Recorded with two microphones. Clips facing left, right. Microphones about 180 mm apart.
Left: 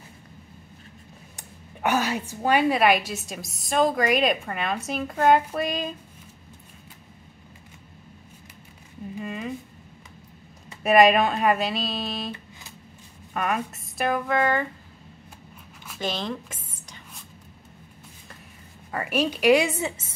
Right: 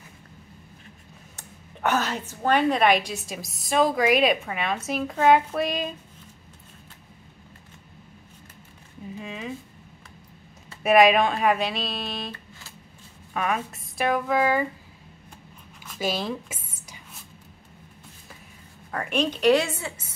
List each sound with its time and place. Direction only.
1.3 s a woman's voice: 10° left (ahead or behind)
9.2 s speech: centre (ahead or behind)
10.8 s a woman's voice: centre (ahead or behind)
13.3 s a woman's voice: centre (ahead or behind)
16.0 s a sound: 5° right (ahead or behind)
18.9 s a woman's voice: 5° left (ahead or behind)